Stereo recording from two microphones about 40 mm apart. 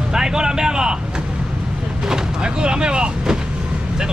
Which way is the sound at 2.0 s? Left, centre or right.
Right.